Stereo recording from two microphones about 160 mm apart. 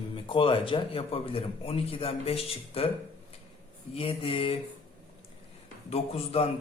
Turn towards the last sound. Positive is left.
turn(degrees=40)  # may be behind; listen again after turning